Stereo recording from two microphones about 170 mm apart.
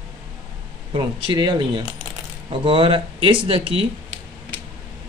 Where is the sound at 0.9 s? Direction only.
30° right (ahead or behind).